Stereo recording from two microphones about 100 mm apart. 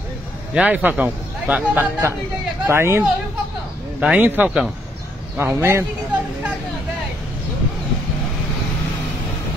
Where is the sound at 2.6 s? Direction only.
25° right (ahead or behind).